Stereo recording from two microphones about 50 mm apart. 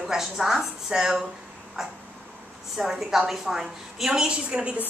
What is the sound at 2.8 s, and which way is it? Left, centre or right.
A woman's voice, centre.